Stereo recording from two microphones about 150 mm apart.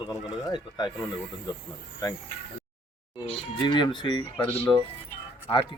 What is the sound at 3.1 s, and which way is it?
Speech, 30° left (ahead or behind).